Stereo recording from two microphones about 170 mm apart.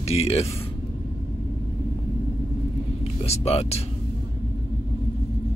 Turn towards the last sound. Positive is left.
turn(degrees=40)  # may be behind; listen again after turning